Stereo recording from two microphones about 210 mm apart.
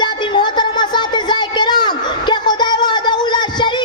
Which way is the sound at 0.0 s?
20° left (ahead or behind).